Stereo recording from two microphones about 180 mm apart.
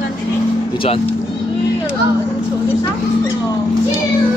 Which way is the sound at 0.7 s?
30° left (ahead or behind).